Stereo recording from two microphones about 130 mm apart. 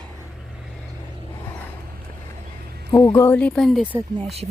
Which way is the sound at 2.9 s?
30° left (ahead or behind).